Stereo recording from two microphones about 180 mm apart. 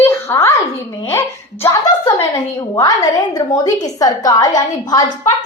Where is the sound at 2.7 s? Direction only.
20° left (ahead or behind).